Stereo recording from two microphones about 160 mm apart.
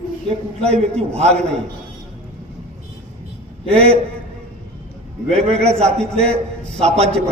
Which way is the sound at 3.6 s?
40° right (ahead or behind).